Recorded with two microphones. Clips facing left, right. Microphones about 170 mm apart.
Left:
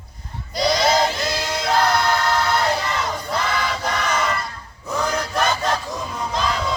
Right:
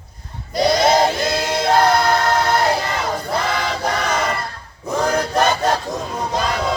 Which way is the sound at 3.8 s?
40° right (ahead or behind).